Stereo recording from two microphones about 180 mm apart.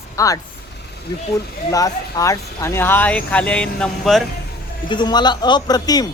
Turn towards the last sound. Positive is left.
turn(degrees=20)  # may be behind; listen again after turning